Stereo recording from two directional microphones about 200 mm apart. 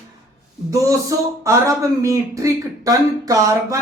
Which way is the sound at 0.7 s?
15° right (ahead or behind).